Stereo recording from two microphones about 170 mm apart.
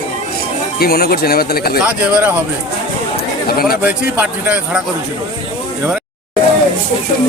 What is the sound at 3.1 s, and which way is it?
Chatter, 65° left (ahead or behind).